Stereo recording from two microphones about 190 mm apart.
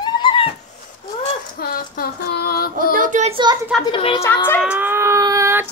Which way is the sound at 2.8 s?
45° right (ahead or behind).